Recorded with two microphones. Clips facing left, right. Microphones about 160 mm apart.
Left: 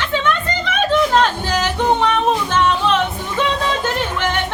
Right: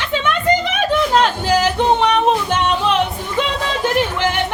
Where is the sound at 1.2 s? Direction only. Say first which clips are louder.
Right 2 dB; 15° right (ahead or behind).